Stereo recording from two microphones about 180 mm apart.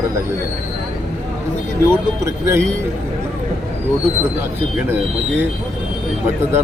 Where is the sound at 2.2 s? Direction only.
15° right (ahead or behind).